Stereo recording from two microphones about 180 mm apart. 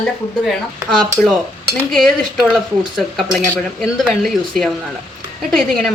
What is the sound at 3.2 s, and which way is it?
Speech, centre (ahead or behind).